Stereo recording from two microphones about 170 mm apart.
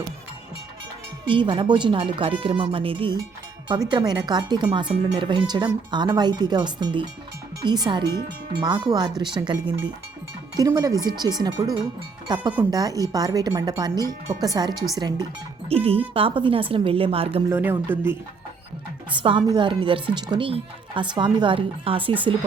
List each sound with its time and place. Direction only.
1.3 s speech: 30° right (ahead or behind)
15.7 s a woman's voice: 35° right (ahead or behind)
17.5 s speech: 10° right (ahead or behind)
19.1 s a woman's voice: 30° right (ahead or behind)